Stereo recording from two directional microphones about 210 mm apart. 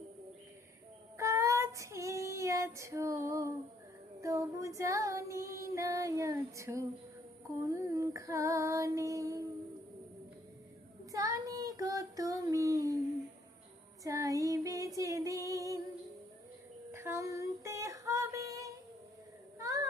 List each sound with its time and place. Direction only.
1.1 s child singing: 15° right (ahead or behind)
4.2 s female singing: 15° right (ahead or behind)
11.1 s child singing: 15° right (ahead or behind)
14.0 s female singing: 15° right (ahead or behind)
16.9 s female singing: 10° right (ahead or behind)
19.5 s a sound: 15° right (ahead or behind)